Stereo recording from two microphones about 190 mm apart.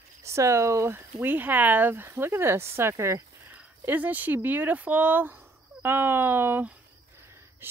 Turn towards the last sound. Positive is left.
turn(degrees=-10)  # may be behind; listen again after turning